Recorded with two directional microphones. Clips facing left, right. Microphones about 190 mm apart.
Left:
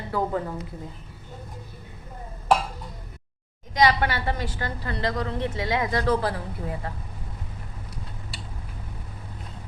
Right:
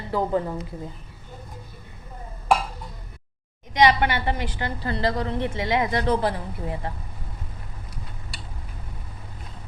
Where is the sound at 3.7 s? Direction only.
20° right (ahead or behind).